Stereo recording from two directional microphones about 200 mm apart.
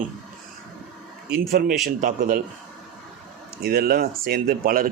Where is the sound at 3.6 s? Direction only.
50° right (ahead or behind).